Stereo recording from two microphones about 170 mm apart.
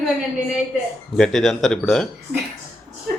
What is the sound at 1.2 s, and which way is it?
Speech, 5° left (ahead or behind).